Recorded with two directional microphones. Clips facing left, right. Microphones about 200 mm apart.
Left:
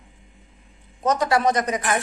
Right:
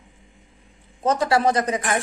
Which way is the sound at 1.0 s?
30° right (ahead or behind).